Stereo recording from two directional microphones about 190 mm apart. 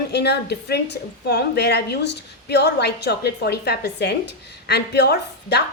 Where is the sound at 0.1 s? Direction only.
60° left (ahead or behind).